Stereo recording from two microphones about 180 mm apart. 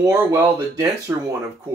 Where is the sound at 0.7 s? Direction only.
20° right (ahead or behind).